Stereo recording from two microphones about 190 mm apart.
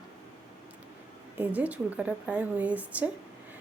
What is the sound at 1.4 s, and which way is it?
Speech, 10° right (ahead or behind).